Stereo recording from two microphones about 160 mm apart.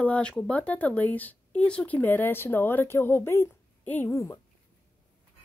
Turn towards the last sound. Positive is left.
turn(degrees=20)  # may be behind; listen again after turning